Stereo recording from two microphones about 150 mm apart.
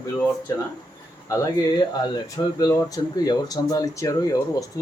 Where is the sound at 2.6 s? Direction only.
25° left (ahead or behind).